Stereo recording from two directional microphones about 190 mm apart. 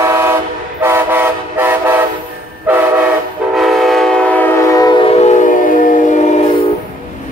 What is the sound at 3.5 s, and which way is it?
Train, centre (ahead or behind).